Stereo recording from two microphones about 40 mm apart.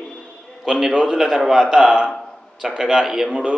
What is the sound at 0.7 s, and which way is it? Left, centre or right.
A man's voice, centre.